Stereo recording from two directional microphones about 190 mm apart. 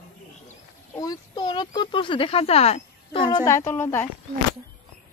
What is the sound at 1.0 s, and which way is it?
Speech, 20° left (ahead or behind).